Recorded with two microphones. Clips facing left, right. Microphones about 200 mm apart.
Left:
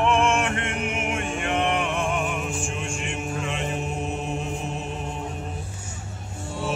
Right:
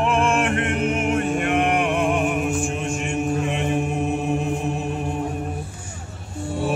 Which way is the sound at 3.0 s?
55° right (ahead or behind).